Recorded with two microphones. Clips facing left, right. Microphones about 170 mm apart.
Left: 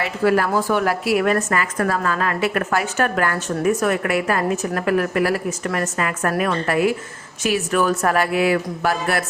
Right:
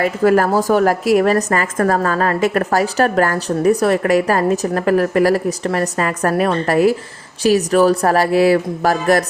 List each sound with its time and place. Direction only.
0.0 s a woman's voice: 45° right (ahead or behind)